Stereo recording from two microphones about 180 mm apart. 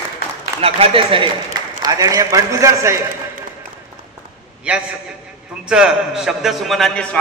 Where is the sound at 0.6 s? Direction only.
30° right (ahead or behind).